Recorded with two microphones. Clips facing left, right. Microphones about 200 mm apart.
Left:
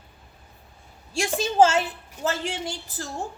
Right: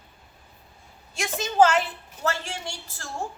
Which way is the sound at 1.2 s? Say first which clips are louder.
Left 1 dB; 30° left (ahead or behind).